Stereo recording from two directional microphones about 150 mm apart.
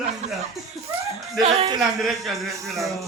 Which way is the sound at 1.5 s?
40° right (ahead or behind).